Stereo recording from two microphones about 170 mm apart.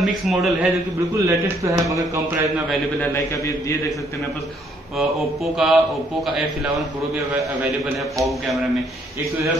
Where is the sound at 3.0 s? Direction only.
15° left (ahead or behind).